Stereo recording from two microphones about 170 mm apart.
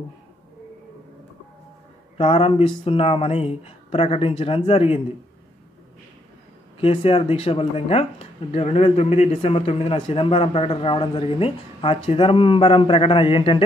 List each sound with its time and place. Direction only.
2.1 s speech: 30° left (ahead or behind)
6.8 s speech: 35° left (ahead or behind)